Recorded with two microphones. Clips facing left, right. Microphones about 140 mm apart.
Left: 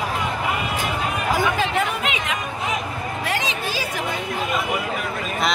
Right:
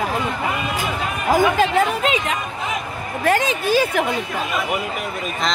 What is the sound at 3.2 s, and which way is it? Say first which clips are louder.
Speech: right 9 dB; 50° right (ahead or behind).